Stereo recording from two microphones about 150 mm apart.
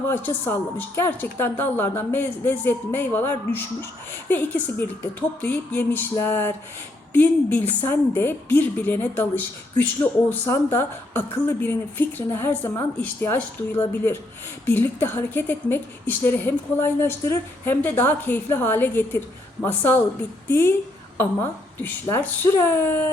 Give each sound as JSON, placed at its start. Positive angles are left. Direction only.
{"t": 0.1, "sound": "a woman's voice", "side_deg": 15}
{"t": 21.2, "sound": "a woman's voice", "side_deg": 15}